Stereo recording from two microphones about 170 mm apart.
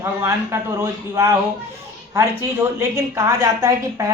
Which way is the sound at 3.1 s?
20° right (ahead or behind).